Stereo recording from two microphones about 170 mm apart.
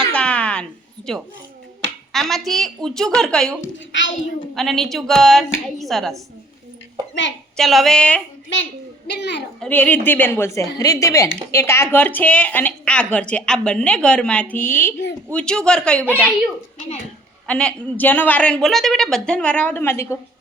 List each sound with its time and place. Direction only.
0.1 s a sound: 10° left (ahead or behind)
2.1 s a woman's voice: centre (ahead or behind)
3.9 s a child's voice: 90° left
4.5 s a woman's voice: centre (ahead or behind)
7.5 s a woman's voice: centre (ahead or behind)
9.0 s a child's voice: 80° left
9.6 s a woman's voice: 10° left (ahead or behind)
17.4 s a woman's voice: 5° left (ahead or behind)